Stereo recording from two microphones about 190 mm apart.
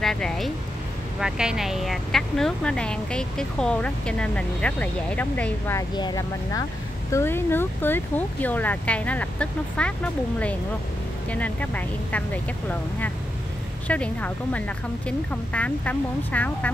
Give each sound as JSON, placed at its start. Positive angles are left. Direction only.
{"t": 0.0, "sound": "speech", "side_deg": 5}